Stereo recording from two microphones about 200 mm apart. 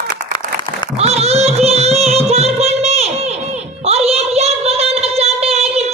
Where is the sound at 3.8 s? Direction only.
30° right (ahead or behind).